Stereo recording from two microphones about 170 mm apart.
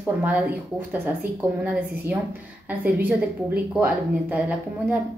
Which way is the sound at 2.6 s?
10° right (ahead or behind).